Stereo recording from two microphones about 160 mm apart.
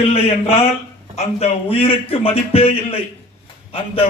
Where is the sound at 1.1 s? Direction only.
40° left (ahead or behind).